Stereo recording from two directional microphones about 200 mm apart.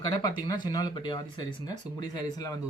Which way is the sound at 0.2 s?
20° left (ahead or behind).